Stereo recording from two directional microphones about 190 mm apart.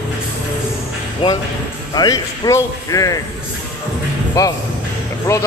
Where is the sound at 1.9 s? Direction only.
20° left (ahead or behind).